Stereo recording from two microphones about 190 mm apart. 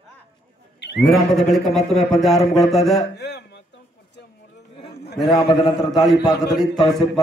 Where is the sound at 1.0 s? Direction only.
Centre (ahead or behind).